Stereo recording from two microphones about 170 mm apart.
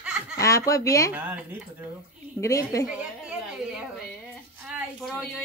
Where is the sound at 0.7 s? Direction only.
20° left (ahead or behind).